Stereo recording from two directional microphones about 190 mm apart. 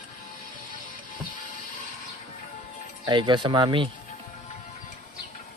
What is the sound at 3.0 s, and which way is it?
Speech, 25° right (ahead or behind).